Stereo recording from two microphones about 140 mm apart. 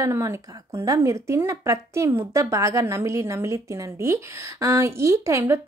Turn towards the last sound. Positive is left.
turn(degrees=-20)  # may be behind; listen again after turning